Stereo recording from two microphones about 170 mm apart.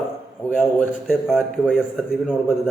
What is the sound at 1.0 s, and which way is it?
A man's voice, centre (ahead or behind).